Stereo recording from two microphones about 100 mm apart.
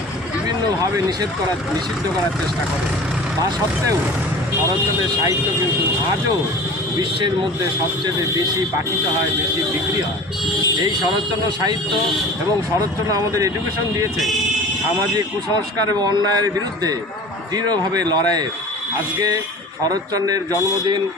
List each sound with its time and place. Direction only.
0.9 s a man's voice: 40° right (ahead or behind)
8.0 s a man's voice: 40° right (ahead or behind)
11.4 s speech: 45° right (ahead or behind)
13.1 s a man's voice: 35° right (ahead or behind)
15.9 s a man's voice: 40° right (ahead or behind)
19.8 s a man's voice: 40° right (ahead or behind)